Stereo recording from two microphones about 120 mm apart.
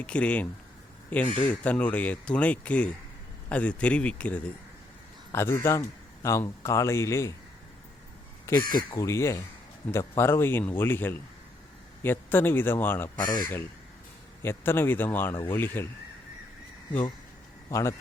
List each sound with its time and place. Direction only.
0.0 s speech: 10° left (ahead or behind)
5.3 s speech: 20° left (ahead or behind)
8.4 s speech: 35° left (ahead or behind)
9.0 s speech: 25° left (ahead or behind)
13.1 s speech: 35° left (ahead or behind)
14.4 s speech: 20° left (ahead or behind)
17.7 s speech: 25° left (ahead or behind)